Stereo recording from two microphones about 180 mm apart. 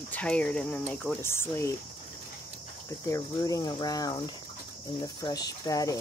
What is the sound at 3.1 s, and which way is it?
Cricket, 20° left (ahead or behind).